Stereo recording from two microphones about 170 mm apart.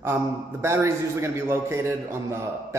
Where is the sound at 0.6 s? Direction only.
15° right (ahead or behind).